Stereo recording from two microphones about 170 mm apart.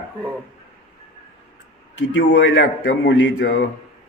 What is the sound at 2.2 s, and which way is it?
A man's voice, 90° left.